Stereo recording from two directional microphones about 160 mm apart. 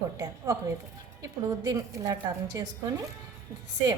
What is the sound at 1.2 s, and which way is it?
A woman's voice, 20° right (ahead or behind).